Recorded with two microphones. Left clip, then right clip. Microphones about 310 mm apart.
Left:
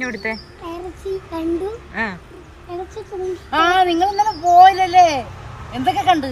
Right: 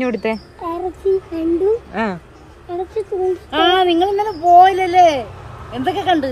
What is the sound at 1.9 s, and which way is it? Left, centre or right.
Speech, right.